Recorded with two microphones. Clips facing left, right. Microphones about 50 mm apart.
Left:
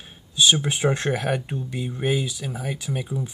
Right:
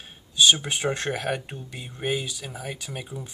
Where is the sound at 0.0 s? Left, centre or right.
Centre.